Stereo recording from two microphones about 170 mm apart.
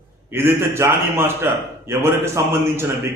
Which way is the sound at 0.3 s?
15° right (ahead or behind).